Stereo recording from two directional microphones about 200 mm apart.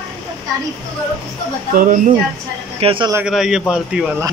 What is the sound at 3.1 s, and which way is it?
Speech, 5° right (ahead or behind).